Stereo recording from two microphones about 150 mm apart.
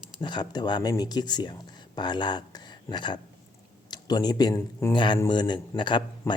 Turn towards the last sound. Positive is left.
turn(degrees=30)  # may be behind; listen again after turning